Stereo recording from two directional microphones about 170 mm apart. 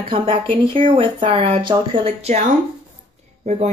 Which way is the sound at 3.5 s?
40° right (ahead or behind).